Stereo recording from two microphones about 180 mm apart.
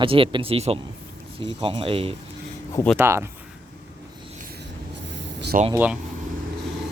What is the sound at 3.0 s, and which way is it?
Speech, 15° right (ahead or behind).